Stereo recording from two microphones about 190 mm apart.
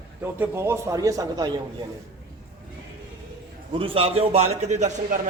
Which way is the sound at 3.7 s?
30° right (ahead or behind).